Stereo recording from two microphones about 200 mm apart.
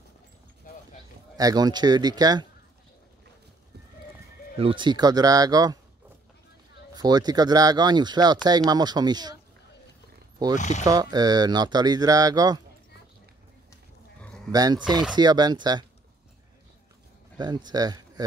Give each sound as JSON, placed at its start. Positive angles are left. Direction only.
{"t": 1.3, "sound": "speech", "side_deg": -20}
{"t": 4.6, "sound": "speech", "side_deg": -25}
{"t": 7.0, "sound": "speech", "side_deg": -20}
{"t": 10.5, "sound": "speech", "side_deg": 35}
{"t": 10.9, "sound": "speech", "side_deg": -20}
{"t": 14.5, "sound": "speech", "side_deg": -20}
{"t": 17.4, "sound": "speech", "side_deg": -20}